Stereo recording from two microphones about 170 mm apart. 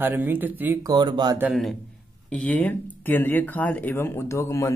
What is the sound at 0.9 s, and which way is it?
Speech, 25° right (ahead or behind).